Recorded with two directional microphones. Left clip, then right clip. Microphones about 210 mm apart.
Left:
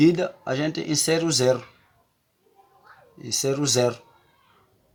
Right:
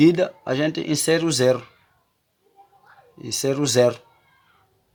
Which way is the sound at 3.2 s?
35° right (ahead or behind).